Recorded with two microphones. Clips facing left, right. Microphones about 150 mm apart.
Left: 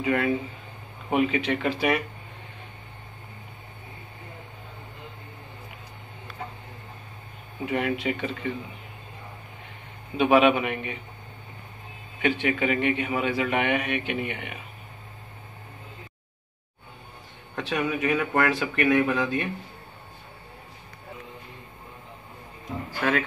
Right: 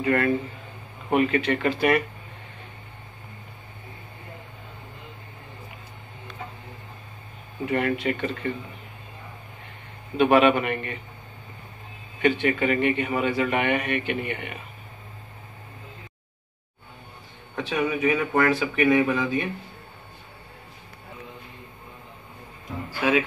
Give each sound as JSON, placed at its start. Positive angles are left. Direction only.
{"t": 0.0, "sound": "a man's voice", "side_deg": 0}
{"t": 7.6, "sound": "a man's voice", "side_deg": 0}
{"t": 10.1, "sound": "a man's voice", "side_deg": 0}
{"t": 12.2, "sound": "a man's voice", "side_deg": 0}
{"t": 17.6, "sound": "a man's voice", "side_deg": 0}
{"t": 22.9, "sound": "speech", "side_deg": -5}